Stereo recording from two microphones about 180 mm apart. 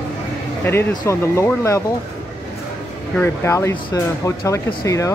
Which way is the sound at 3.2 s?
15° left (ahead or behind).